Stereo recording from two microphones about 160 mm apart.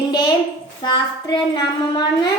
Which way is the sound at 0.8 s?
30° left (ahead or behind).